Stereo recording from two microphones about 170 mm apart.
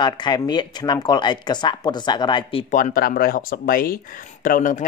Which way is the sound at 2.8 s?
55° left (ahead or behind).